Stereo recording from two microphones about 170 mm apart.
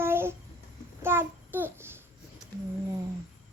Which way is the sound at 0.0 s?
15° right (ahead or behind).